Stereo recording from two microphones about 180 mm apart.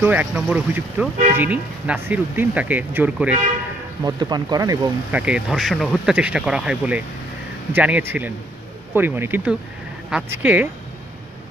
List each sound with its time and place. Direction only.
0.0 s speech: 10° right (ahead or behind)
4.0 s speech: 25° right (ahead or behind)
5.1 s speech: 5° right (ahead or behind)